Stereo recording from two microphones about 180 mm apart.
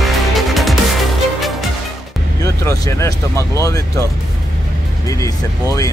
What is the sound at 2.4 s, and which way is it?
Speech, 20° left (ahead or behind).